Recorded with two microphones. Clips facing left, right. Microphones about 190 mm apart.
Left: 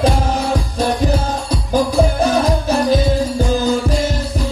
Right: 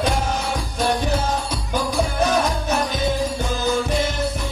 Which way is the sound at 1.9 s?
30° left (ahead or behind).